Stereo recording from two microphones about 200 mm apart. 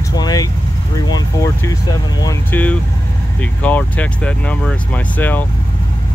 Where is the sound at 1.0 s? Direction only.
15° left (ahead or behind).